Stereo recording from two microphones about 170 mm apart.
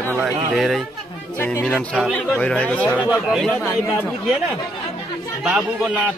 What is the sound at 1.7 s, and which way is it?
Speech, centre (ahead or behind).